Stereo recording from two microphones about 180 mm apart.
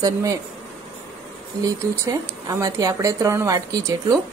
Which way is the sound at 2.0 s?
15° right (ahead or behind).